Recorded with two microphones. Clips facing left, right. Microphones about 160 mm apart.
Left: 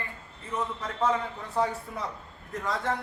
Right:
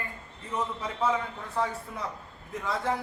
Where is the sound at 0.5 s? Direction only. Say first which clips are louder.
Even; centre (ahead or behind).